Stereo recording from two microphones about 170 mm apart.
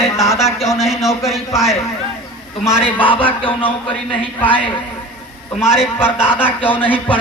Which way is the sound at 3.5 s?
30° left (ahead or behind).